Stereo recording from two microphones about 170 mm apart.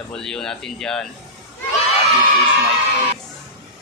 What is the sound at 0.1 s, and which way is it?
Speech, 5° left (ahead or behind).